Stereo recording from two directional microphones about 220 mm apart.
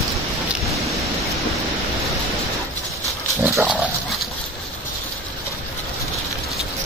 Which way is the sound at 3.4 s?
5° right (ahead or behind).